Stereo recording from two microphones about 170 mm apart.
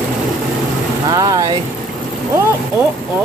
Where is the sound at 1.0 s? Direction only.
20° right (ahead or behind).